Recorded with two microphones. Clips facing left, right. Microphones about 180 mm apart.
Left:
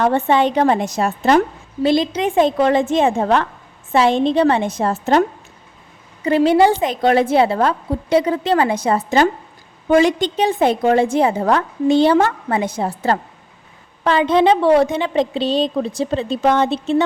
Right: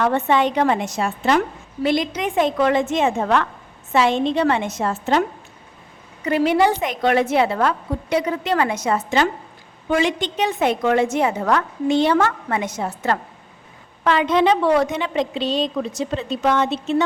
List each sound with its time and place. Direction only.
0.0 s a woman's voice: 30° left (ahead or behind)
1.8 s a woman's voice: 30° left (ahead or behind)
6.2 s a woman's voice: 30° left (ahead or behind)